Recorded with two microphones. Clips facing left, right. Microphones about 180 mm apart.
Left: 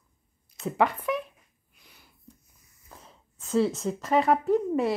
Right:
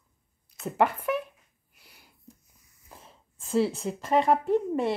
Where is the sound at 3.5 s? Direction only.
30° right (ahead or behind).